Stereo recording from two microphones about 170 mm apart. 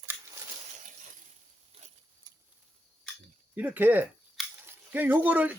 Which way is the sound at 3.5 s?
10° right (ahead or behind).